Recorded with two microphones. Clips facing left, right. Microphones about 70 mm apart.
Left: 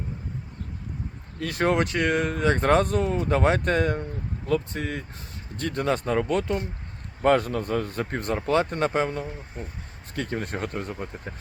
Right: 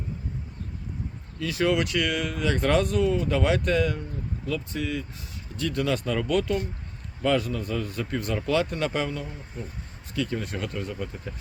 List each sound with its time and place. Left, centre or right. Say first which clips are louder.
1.4 s speech: left 1 dB; left
7.2 s speech: left 4 dB; left